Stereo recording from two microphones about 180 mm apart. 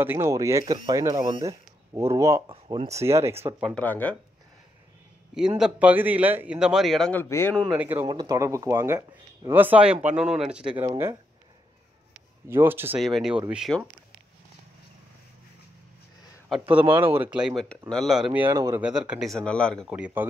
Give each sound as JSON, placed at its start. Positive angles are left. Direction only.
{"t": 0.0, "sound": "speech", "side_deg": -15}
{"t": 2.5, "sound": "speech", "side_deg": -30}
{"t": 3.0, "sound": "speech", "side_deg": -15}
{"t": 3.6, "sound": "speech", "side_deg": 5}
{"t": 5.6, "sound": "a man's voice", "side_deg": -10}
{"t": 7.7, "sound": "speech", "side_deg": -10}
{"t": 8.1, "sound": "a man's voice", "side_deg": -20}
{"t": 12.4, "sound": "speech", "side_deg": -10}
{"t": 13.0, "sound": "a man's voice", "side_deg": 0}
{"t": 16.7, "sound": "a man's voice", "side_deg": -10}
{"t": 18.8, "sound": "a man's voice", "side_deg": -5}
{"t": 19.9, "sound": "speech", "side_deg": -10}